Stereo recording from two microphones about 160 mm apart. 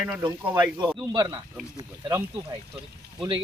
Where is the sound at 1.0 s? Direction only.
25° right (ahead or behind).